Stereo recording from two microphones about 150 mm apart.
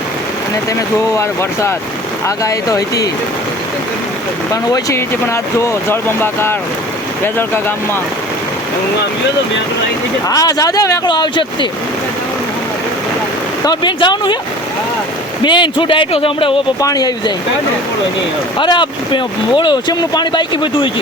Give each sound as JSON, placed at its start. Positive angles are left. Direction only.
{"t": 1.1, "sound": "speech", "side_deg": 20}
{"t": 4.7, "sound": "speech", "side_deg": 20}
{"t": 10.2, "sound": "speech", "side_deg": 25}
{"t": 13.7, "sound": "speech", "side_deg": 30}
{"t": 15.4, "sound": "speech", "side_deg": 30}
{"t": 16.8, "sound": "speech", "side_deg": 25}
{"t": 18.5, "sound": "speech", "side_deg": 30}